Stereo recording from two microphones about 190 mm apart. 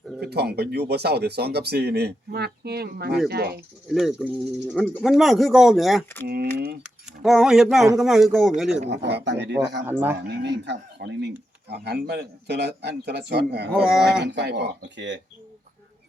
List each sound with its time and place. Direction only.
0.2 s speech: 55° right (ahead or behind)
3.8 s speech: centre (ahead or behind)
6.2 s speech: 55° right (ahead or behind)
6.8 s speech: 5° right (ahead or behind)
9.0 s speech: 65° right (ahead or behind)
9.8 s speech: 10° right (ahead or behind)
10.2 s speech: 65° right (ahead or behind)
13.8 s speech: 5° right (ahead or behind)
14.3 s speech: 65° right (ahead or behind)